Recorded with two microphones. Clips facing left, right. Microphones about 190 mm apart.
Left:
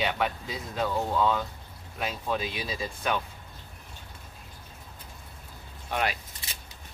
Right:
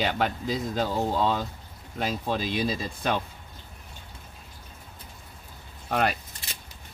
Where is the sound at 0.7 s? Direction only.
35° right (ahead or behind).